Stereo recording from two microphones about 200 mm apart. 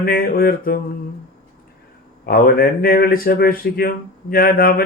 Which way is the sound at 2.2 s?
50° left (ahead or behind).